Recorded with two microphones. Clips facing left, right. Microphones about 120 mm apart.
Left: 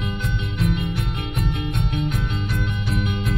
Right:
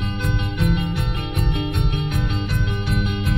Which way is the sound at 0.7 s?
70° right (ahead or behind).